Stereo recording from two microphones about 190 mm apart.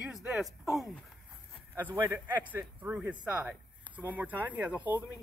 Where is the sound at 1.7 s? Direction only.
10° right (ahead or behind).